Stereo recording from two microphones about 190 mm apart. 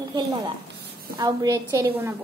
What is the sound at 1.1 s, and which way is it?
Speech, 20° right (ahead or behind).